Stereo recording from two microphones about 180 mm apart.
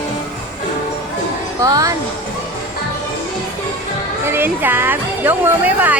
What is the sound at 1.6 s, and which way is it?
Speech, 20° right (ahead or behind).